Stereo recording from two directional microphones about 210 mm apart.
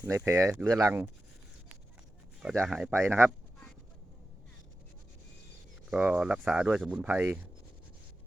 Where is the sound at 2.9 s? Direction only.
10° right (ahead or behind).